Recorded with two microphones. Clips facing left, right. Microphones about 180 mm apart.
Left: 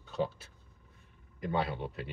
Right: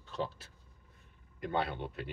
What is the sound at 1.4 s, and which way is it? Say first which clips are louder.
Speech: left 1 dB; centre (ahead or behind).